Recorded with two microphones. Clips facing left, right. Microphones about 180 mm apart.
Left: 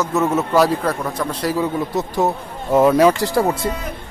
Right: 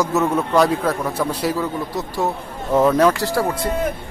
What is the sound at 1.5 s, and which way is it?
Speech, 20° left (ahead or behind).